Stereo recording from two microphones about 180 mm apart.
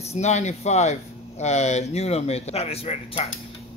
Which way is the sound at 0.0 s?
40° left (ahead or behind).